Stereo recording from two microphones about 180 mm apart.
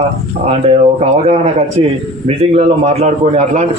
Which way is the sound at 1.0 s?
35° right (ahead or behind).